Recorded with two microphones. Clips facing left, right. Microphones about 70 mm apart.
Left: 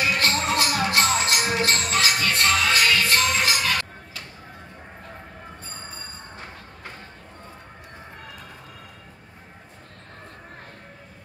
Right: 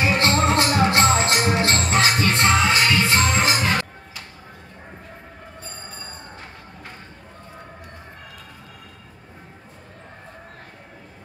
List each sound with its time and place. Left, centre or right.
0.0 s music: right